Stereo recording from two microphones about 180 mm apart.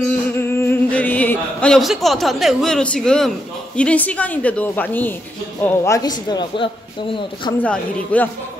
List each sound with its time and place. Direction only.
0.4 s a man's voice: 15° left (ahead or behind)
7.6 s speech: 10° left (ahead or behind)